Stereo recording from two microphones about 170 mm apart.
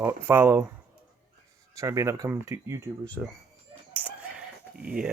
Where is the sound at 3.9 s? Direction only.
10° right (ahead or behind).